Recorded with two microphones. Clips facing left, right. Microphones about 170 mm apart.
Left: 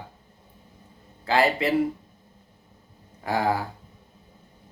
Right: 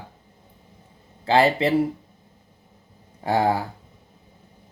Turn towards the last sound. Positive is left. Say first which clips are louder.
# right 4 dB
turn(degrees=-30)  # may be behind; listen again after turning